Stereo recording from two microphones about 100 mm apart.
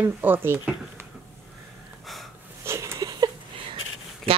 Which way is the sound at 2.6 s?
25° right (ahead or behind).